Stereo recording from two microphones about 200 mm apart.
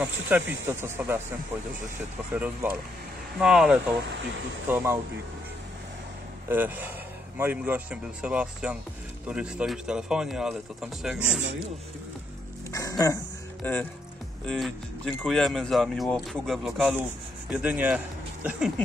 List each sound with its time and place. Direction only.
0.0 s speech: 10° right (ahead or behind)
2.3 s speech: 10° right (ahead or behind)
6.5 s speech: 10° right (ahead or behind)
12.7 s a sound: 15° left (ahead or behind)
13.6 s a man's voice: 10° left (ahead or behind); by 18.7 s 5° right (ahead or behind)